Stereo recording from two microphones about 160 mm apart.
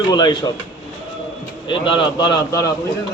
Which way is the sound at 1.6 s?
30° left (ahead or behind).